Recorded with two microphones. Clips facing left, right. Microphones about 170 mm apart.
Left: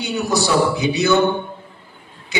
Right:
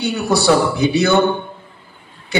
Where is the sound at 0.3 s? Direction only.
60° right (ahead or behind).